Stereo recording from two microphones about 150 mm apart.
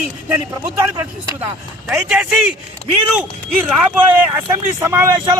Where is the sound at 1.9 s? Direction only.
5° right (ahead or behind).